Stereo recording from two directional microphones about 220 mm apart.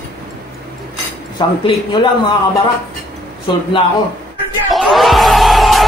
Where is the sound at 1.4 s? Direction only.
20° left (ahead or behind).